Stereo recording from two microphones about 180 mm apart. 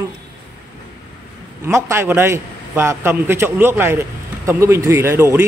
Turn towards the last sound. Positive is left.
turn(degrees=-15)  # may be behind; listen again after turning